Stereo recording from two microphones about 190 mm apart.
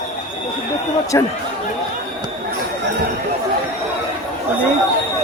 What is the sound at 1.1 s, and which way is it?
Speech, 15° left (ahead or behind).